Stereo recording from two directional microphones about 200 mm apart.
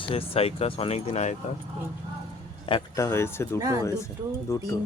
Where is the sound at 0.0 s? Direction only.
30° left (ahead or behind).